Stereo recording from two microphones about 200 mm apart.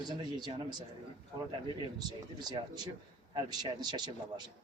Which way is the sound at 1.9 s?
20° right (ahead or behind).